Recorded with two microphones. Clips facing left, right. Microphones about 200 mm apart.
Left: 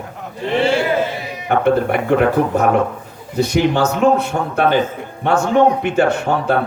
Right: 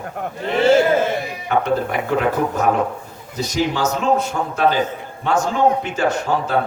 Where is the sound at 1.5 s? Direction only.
60° left (ahead or behind).